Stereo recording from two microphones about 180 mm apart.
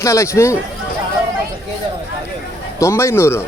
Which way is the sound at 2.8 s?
15° left (ahead or behind).